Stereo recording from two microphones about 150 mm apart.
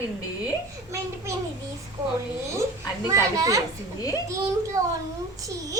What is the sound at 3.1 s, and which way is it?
A child's voice, 20° right (ahead or behind).